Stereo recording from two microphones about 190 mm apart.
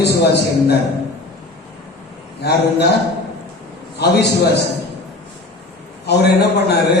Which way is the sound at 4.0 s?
60° left (ahead or behind).